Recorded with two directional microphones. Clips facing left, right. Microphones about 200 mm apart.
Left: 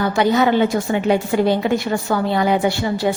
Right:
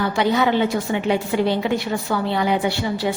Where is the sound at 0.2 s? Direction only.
45° left (ahead or behind).